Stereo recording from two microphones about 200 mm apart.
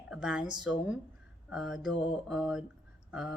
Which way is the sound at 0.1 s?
5° right (ahead or behind).